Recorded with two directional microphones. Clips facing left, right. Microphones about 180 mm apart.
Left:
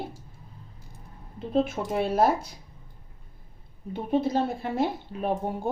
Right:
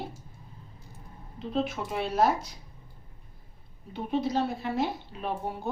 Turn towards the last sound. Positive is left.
turn(degrees=50)  # may be behind; listen again after turning